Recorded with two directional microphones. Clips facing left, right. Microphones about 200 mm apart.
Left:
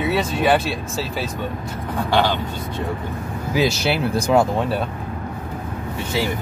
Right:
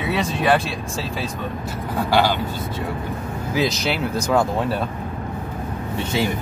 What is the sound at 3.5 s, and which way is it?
Speech, 15° left (ahead or behind).